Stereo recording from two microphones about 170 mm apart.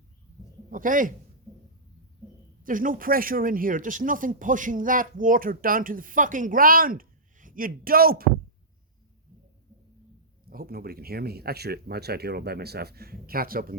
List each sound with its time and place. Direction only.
0.7 s speech: 50° right (ahead or behind)
2.6 s speech: 55° right (ahead or behind)
10.5 s speech: 60° right (ahead or behind)